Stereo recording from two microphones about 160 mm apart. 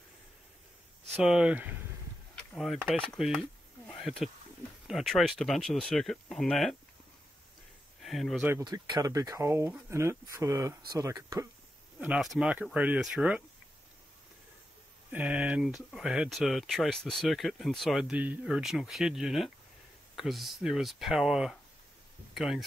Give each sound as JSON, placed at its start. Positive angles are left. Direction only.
{"t": 1.1, "sound": "speech", "side_deg": -5}
{"t": 3.1, "sound": "a sound", "side_deg": 5}
{"t": 4.8, "sound": "speech", "side_deg": 0}
{"t": 8.0, "sound": "speech", "side_deg": 0}
{"t": 8.5, "sound": "speech", "side_deg": -20}
{"t": 12.0, "sound": "speech", "side_deg": -5}
{"t": 15.0, "sound": "speech", "side_deg": -10}